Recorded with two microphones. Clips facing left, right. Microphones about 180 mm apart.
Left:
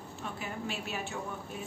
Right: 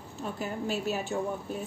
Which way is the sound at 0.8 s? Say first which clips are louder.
Right 7 dB; 40° right (ahead or behind).